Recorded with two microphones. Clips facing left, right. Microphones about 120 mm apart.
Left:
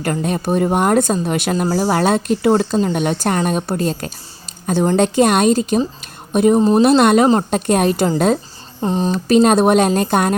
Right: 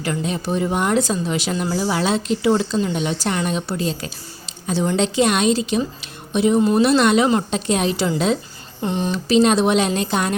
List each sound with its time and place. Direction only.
0.0 s a woman's voice: 50° left (ahead or behind)
6.6 s speech: 35° left (ahead or behind)
6.8 s speech: 50° left (ahead or behind)
8.8 s speech: 35° left (ahead or behind)
9.1 s speech: 50° left (ahead or behind)